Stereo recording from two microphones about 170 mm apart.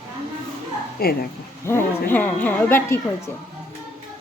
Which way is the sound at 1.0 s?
60° left (ahead or behind).